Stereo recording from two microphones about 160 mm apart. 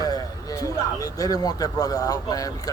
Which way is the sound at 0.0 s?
20° left (ahead or behind).